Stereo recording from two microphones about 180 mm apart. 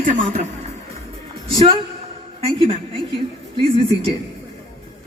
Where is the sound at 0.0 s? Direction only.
50° right (ahead or behind).